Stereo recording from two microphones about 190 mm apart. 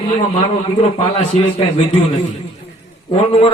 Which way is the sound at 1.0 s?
35° left (ahead or behind).